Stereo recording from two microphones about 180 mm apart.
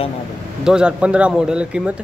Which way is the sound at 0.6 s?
5° right (ahead or behind).